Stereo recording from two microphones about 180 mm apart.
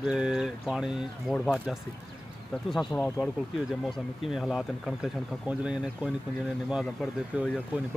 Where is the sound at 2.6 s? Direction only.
5° left (ahead or behind).